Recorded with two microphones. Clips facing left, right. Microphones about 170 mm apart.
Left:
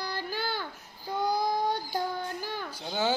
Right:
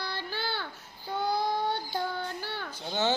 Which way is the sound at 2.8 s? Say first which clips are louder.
Even; 10° left (ahead or behind).